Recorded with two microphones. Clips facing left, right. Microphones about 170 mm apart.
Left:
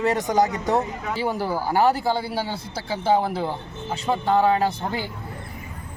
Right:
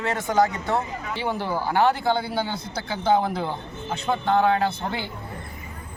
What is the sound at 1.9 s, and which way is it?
Speech, 40° left (ahead or behind).